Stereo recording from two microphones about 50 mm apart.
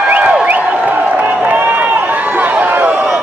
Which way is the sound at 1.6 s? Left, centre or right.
Right.